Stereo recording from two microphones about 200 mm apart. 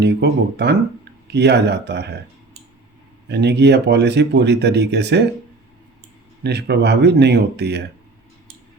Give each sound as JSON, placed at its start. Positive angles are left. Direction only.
{"t": 0.0, "sound": "speech", "side_deg": -55}
{"t": 3.2, "sound": "speech", "side_deg": -55}
{"t": 6.4, "sound": "speech", "side_deg": -55}